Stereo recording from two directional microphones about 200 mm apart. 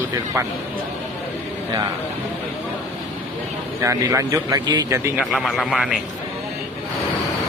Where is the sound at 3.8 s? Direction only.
15° right (ahead or behind).